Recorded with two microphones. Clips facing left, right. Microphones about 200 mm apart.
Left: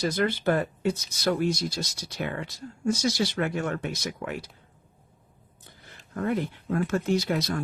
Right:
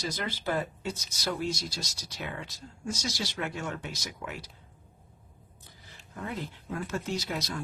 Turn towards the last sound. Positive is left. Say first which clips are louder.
# left 8 dB
turn(degrees=55)  # may be behind; listen again after turning